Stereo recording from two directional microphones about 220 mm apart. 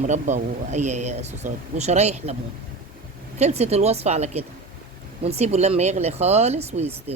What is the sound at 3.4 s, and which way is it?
Speech, 30° right (ahead or behind).